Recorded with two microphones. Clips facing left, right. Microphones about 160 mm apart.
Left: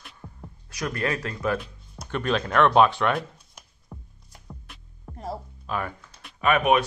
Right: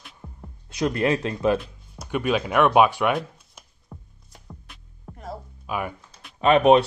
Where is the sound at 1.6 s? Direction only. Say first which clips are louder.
Even; 10° right (ahead or behind).